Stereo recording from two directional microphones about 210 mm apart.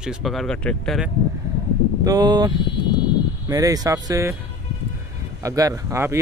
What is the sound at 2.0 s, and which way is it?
Speech, 20° right (ahead or behind).